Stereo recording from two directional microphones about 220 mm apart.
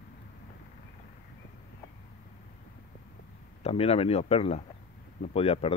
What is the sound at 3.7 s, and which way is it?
Speech, 25° left (ahead or behind).